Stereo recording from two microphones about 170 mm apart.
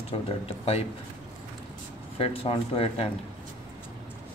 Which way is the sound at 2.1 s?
35° left (ahead or behind).